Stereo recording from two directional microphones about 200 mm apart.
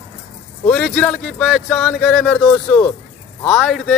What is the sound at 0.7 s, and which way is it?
Speech, 5° left (ahead or behind).